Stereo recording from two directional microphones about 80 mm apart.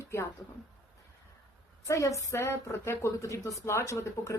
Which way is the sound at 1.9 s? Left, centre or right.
Left.